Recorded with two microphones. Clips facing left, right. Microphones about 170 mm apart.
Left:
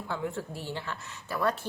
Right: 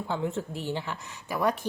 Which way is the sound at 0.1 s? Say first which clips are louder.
Right 3 dB; 20° right (ahead or behind).